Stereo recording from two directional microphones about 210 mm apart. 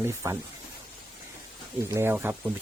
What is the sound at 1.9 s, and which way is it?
Speech, 10° right (ahead or behind).